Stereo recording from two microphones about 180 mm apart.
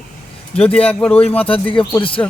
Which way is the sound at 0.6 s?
5° left (ahead or behind).